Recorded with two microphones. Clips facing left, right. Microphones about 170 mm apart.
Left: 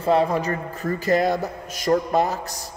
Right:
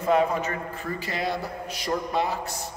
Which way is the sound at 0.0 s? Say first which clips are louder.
Left 3 dB; 35° left (ahead or behind).